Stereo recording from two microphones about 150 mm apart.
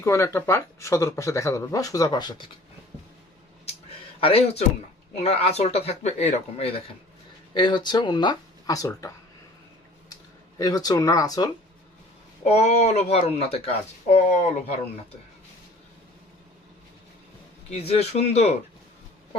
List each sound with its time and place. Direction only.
0.0 s speech: 20° left (ahead or behind)
4.2 s speech: 40° left (ahead or behind)
7.5 s speech: 30° left (ahead or behind)
10.6 s speech: 25° left (ahead or behind)
12.5 s speech: 50° left (ahead or behind)
17.7 s speech: 45° left (ahead or behind)